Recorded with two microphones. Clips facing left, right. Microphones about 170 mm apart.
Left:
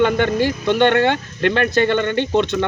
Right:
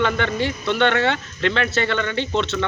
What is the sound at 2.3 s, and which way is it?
Speech, 15° left (ahead or behind).